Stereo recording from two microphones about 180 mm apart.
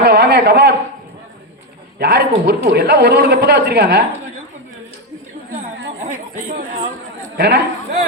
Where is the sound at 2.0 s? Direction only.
65° right (ahead or behind).